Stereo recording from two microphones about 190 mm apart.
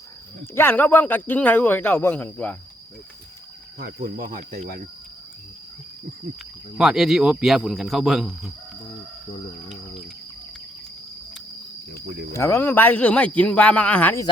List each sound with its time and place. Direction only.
0.5 s speech: 10° left (ahead or behind)
3.8 s speech: 50° right (ahead or behind)
6.7 s speech: centre (ahead or behind)
12.3 s speech: 15° left (ahead or behind)